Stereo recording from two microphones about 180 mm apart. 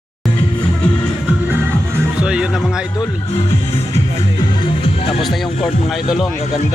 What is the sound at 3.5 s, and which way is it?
Music, 35° left (ahead or behind).